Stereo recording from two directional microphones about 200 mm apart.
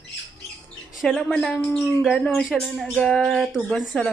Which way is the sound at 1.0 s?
Centre (ahead or behind).